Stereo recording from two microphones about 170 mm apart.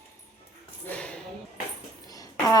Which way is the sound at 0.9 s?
5° left (ahead or behind).